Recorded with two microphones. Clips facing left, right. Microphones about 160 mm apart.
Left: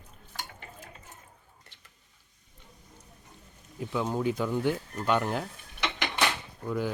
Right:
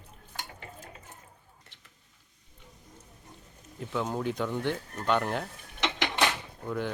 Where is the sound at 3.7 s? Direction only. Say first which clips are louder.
Left 2 dB; centre (ahead or behind).